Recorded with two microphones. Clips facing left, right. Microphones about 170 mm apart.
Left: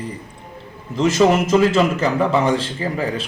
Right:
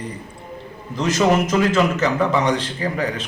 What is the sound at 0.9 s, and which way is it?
A man's voice, 25° left (ahead or behind).